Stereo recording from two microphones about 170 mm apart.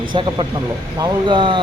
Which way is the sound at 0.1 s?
30° right (ahead or behind).